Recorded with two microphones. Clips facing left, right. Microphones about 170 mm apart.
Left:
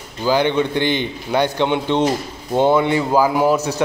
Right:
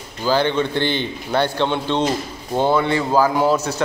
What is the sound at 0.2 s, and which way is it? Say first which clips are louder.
A man's voice: left 2 dB; 15° left (ahead or behind).